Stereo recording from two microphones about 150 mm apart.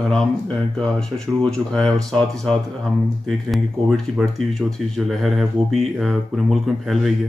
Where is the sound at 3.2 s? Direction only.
Centre (ahead or behind).